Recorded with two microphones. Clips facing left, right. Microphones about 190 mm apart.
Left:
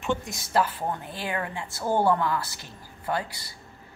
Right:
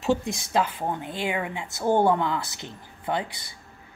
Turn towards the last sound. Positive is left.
turn(degrees=-20)  # may be behind; listen again after turning